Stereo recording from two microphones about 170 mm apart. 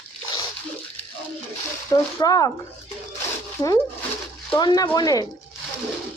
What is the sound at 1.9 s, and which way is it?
Speech, 20° left (ahead or behind).